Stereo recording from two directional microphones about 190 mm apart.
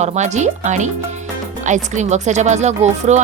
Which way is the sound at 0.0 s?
40° right (ahead or behind).